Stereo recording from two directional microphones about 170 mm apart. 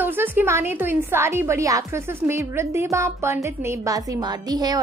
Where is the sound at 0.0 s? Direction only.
10° right (ahead or behind).